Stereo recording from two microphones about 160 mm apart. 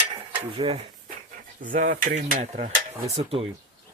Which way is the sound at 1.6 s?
55° right (ahead or behind).